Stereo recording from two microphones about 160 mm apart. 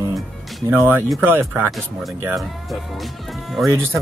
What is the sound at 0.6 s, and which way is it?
Speech, 15° right (ahead or behind).